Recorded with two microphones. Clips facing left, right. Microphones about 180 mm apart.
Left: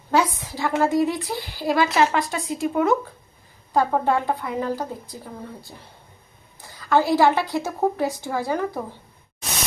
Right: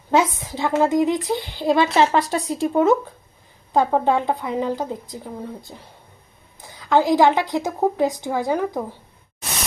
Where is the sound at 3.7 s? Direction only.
20° right (ahead or behind).